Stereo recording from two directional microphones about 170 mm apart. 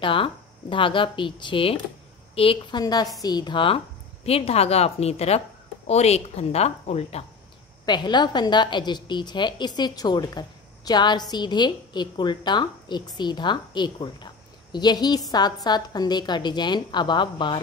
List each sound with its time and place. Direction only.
0.0 s a woman's voice: 30° left (ahead or behind)
7.8 s a woman's voice: 25° left (ahead or behind)